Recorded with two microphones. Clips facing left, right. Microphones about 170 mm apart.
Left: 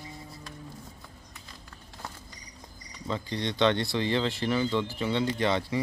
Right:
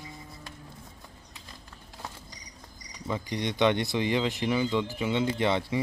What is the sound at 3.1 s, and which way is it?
Speech, 15° right (ahead or behind).